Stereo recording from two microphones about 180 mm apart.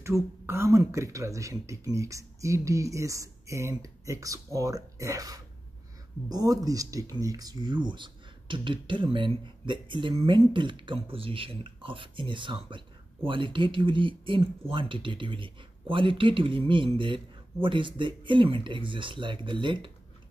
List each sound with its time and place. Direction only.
0.0 s speech: 15° right (ahead or behind)